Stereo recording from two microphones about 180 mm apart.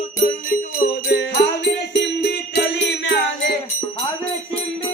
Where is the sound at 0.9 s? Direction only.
75° left (ahead or behind).